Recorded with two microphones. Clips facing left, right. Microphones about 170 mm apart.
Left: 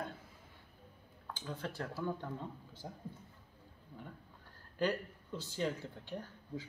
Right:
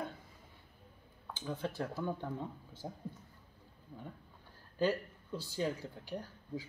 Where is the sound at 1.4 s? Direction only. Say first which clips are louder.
Right 4 dB; 15° right (ahead or behind).